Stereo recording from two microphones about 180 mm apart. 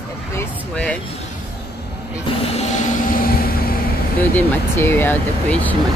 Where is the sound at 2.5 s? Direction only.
40° left (ahead or behind).